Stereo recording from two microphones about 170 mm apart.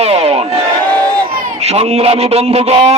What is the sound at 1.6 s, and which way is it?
Speech, 40° right (ahead or behind).